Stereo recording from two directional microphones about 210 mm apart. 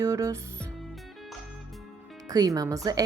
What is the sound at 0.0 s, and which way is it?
Music, 15° right (ahead or behind).